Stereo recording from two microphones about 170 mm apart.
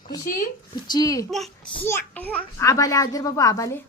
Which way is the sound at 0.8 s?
25° left (ahead or behind).